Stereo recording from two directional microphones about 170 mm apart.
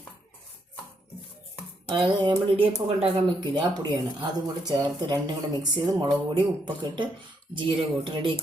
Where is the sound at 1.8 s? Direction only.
25° right (ahead or behind).